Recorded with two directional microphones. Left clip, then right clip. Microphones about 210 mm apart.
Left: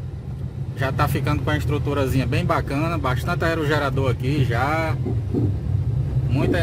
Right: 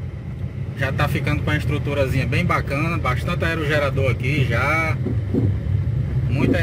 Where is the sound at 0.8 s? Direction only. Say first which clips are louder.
Even; 10° left (ahead or behind).